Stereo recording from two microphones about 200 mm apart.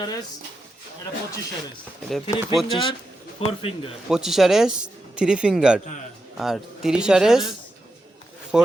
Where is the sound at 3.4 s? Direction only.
30° left (ahead or behind).